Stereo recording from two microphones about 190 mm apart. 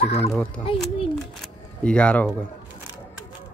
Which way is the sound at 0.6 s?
30° left (ahead or behind).